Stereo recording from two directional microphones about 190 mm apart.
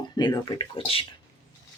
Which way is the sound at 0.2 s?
20° left (ahead or behind).